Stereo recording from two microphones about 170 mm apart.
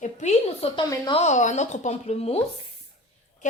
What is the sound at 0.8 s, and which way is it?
Speech, 25° left (ahead or behind).